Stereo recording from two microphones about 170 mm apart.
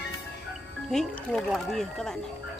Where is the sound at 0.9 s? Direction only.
5° left (ahead or behind).